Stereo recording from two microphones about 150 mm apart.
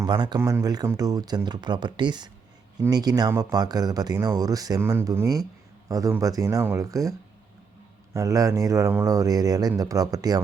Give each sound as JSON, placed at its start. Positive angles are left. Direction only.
{"t": 0.0, "sound": "speech", "side_deg": -30}
{"t": 8.1, "sound": "speech", "side_deg": -20}